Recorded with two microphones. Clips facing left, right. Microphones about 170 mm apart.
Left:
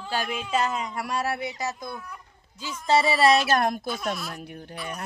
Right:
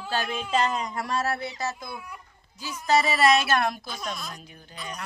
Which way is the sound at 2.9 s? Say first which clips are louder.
Left 1 dB; 30° left (ahead or behind).